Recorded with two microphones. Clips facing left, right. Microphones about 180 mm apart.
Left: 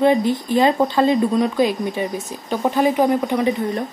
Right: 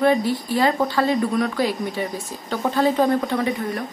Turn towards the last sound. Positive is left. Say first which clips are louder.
# left 4 dB
turn(degrees=20)  # may be behind; listen again after turning